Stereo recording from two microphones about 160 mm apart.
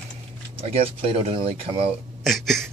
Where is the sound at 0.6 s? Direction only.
35° right (ahead or behind).